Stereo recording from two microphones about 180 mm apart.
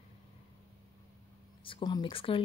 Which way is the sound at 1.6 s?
25° left (ahead or behind).